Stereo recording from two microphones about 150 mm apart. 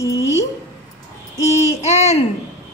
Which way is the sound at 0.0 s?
20° left (ahead or behind).